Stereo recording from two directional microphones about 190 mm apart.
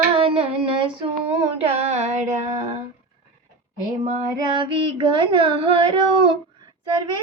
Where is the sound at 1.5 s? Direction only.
35° right (ahead or behind).